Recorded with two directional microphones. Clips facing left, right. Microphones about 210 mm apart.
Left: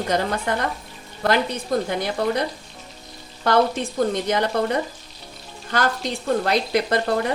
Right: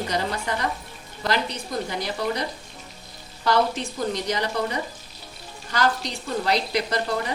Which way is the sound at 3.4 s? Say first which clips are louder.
Left 3 dB; 55° left (ahead or behind).